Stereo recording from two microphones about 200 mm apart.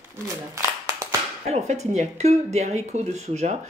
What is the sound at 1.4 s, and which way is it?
Speech, 35° right (ahead or behind).